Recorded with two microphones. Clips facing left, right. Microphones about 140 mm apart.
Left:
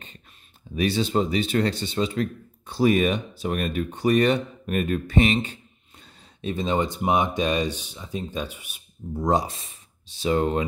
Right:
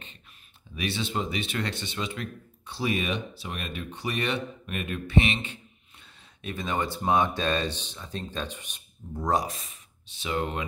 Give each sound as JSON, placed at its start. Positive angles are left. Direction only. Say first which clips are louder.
{"t": 0.7, "sound": "speech", "louder": "left 8 dB", "side_deg": 40}
{"t": 6.4, "sound": "speech", "louder": "left 6 dB", "side_deg": 25}
{"t": 9.3, "sound": "speech", "louder": "left 3 dB", "side_deg": 30}